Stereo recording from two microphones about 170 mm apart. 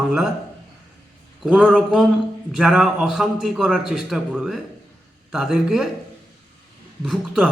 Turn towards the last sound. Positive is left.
turn(degrees=-5)  # may be behind; listen again after turning